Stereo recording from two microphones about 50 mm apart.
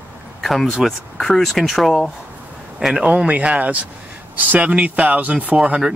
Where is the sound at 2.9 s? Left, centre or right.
Right.